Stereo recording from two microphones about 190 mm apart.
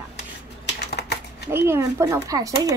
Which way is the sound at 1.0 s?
60° left (ahead or behind).